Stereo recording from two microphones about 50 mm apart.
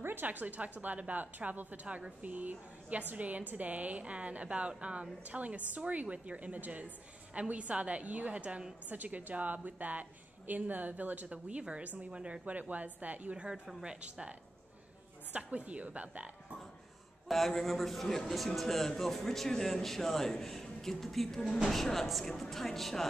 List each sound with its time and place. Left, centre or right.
0.0 s a woman's voice: right
11.2 s a woman's voice: centre
15.3 s a woman's voice: right
17.3 s a man's voice: centre